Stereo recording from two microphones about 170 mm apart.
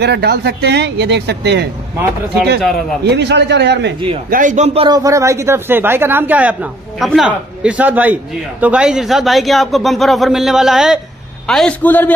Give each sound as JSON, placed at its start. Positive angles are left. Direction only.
{"t": 0.0, "sound": "speech", "side_deg": -75}
{"t": 3.0, "sound": "a man's voice", "side_deg": -80}
{"t": 4.3, "sound": "a man's voice", "side_deg": -50}
{"t": 4.8, "sound": "a man's voice", "side_deg": -20}